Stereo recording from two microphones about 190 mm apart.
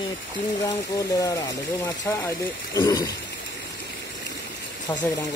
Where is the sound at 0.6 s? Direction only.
20° left (ahead or behind).